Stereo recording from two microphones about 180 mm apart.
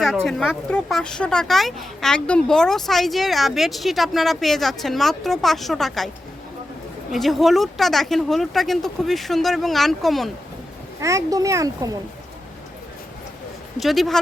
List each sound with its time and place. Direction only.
0.0 s speech: centre (ahead or behind)
7.1 s speech: centre (ahead or behind)
11.0 s a child's voice: 20° right (ahead or behind)
13.7 s speech: centre (ahead or behind)